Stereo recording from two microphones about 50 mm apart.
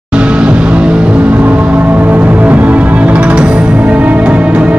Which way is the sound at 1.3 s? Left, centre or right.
Right.